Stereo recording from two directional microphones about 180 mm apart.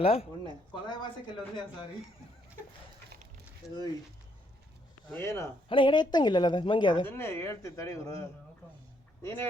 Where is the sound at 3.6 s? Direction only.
20° left (ahead or behind).